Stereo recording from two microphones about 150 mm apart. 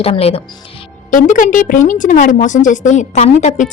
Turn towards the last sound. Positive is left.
turn(degrees=50)  # may be behind; listen again after turning